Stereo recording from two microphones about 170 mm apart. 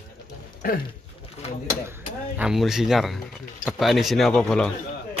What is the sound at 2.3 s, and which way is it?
Speech, 5° right (ahead or behind).